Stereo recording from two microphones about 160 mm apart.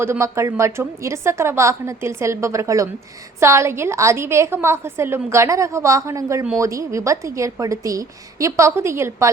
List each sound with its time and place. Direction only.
0.0 s a woman's voice: 15° right (ahead or behind)